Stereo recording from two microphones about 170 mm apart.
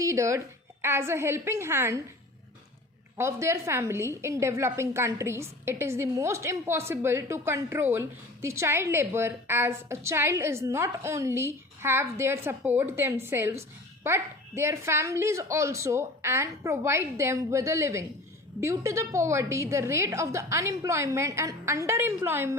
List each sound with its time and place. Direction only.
0.0 s a woman's voice: 15° right (ahead or behind)
3.2 s a woman's voice: 15° right (ahead or behind)